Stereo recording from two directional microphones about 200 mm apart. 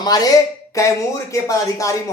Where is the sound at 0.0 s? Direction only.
20° left (ahead or behind).